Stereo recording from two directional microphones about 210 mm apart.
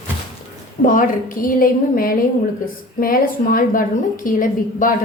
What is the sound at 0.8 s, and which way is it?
A woman's voice, 40° left (ahead or behind).